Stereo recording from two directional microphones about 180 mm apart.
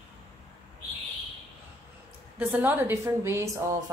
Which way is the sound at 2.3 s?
10° right (ahead or behind).